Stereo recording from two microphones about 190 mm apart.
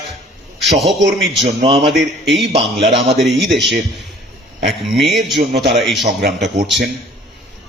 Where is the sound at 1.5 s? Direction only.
30° right (ahead or behind).